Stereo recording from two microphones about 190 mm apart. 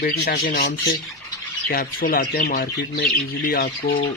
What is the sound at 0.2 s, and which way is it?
Speech, 50° left (ahead or behind).